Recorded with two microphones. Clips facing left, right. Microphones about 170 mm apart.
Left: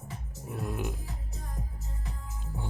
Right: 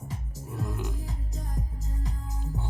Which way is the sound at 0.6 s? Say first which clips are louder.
Left 2 dB; 15° left (ahead or behind).